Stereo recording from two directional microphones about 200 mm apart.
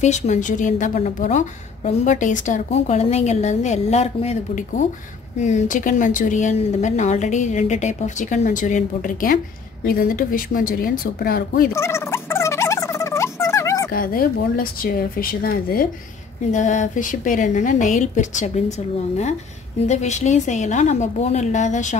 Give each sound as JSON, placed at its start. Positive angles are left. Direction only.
{"t": 0.0, "sound": "a woman's voice", "side_deg": 35}
{"t": 11.7, "sound": "turkey", "side_deg": 15}
{"t": 13.9, "sound": "a woman's voice", "side_deg": 45}
{"t": 19.8, "sound": "a woman's voice", "side_deg": 35}